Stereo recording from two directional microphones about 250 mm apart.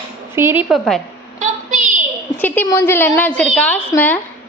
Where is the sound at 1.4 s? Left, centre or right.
Right.